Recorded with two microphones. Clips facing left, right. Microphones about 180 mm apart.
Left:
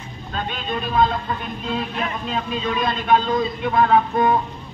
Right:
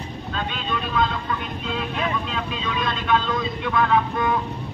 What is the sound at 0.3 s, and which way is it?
Speech, 40° left (ahead or behind).